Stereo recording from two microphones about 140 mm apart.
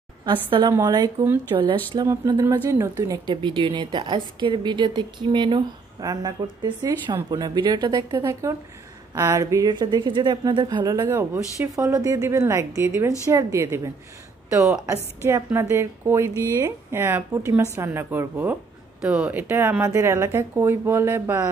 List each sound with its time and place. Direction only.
0.2 s a woman's voice: 35° right (ahead or behind)
3.3 s a woman's voice: 35° right (ahead or behind)
11.0 s a woman's voice: 15° right (ahead or behind)
19.3 s a woman's voice: 15° right (ahead or behind)